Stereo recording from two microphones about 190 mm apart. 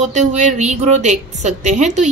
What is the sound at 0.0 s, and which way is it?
A woman's voice, 35° right (ahead or behind).